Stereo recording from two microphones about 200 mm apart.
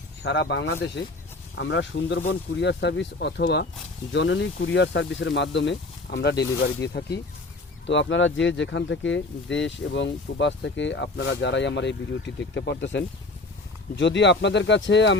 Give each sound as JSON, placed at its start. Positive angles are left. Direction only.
{"t": 0.2, "sound": "speech", "side_deg": 55}
{"t": 7.9, "sound": "speech", "side_deg": 65}